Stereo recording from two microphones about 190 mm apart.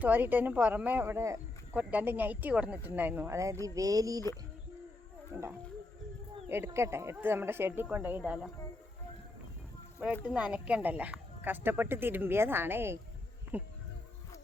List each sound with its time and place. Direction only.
0.0 s speech: 10° right (ahead or behind)
5.3 s speech: 10° right (ahead or behind)
10.2 s speech: 5° right (ahead or behind)